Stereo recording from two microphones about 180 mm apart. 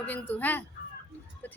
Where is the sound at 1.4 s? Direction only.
10° left (ahead or behind).